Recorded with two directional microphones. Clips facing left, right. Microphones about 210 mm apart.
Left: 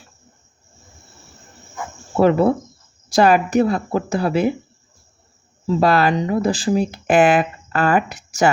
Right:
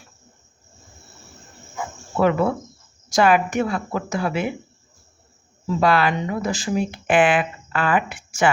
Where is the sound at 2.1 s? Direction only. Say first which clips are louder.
Left 4 dB; 35° left (ahead or behind).